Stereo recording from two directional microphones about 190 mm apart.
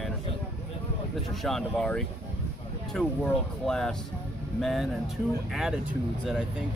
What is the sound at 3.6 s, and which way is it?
Speech, 5° left (ahead or behind).